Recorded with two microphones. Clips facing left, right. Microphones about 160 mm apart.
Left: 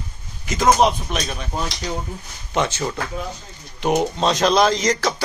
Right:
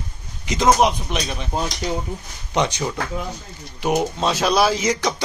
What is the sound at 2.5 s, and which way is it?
Speech, 15° right (ahead or behind).